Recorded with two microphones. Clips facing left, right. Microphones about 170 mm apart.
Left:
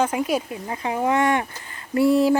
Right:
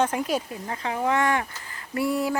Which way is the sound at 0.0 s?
5° left (ahead or behind).